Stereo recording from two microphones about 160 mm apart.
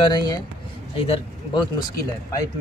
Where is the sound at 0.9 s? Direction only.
35° left (ahead or behind).